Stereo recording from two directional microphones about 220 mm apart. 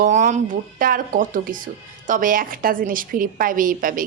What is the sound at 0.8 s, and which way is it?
A woman's voice, 40° right (ahead or behind).